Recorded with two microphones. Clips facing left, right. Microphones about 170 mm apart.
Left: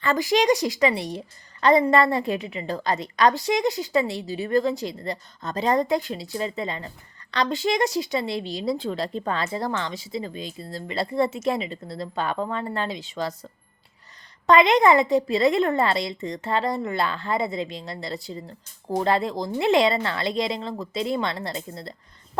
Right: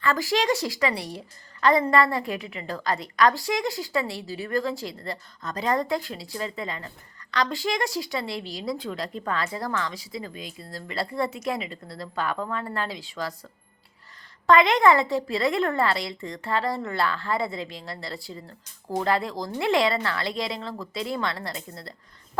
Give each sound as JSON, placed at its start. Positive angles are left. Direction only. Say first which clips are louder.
{"t": 0.0, "sound": "a woman's voice", "louder": "left 3 dB", "side_deg": 20}